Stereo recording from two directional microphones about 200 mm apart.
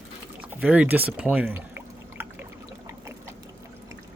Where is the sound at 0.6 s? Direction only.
5° right (ahead or behind).